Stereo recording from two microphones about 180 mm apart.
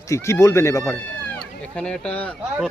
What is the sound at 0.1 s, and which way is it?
Speech, 15° left (ahead or behind).